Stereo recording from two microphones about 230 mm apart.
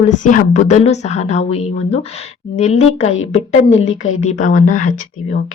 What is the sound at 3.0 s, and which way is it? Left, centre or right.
A woman's voice, left.